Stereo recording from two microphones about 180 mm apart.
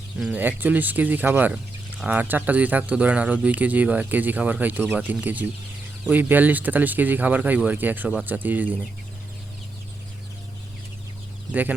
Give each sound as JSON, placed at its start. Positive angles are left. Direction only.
{"t": 0.2, "sound": "speech", "side_deg": -10}
{"t": 11.5, "sound": "speech", "side_deg": -10}